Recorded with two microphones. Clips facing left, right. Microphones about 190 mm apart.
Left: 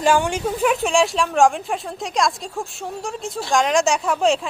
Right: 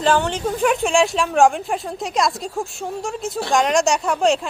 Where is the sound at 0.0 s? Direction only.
10° left (ahead or behind).